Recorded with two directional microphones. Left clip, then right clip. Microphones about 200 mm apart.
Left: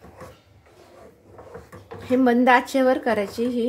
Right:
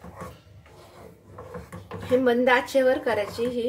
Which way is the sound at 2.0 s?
50° left (ahead or behind).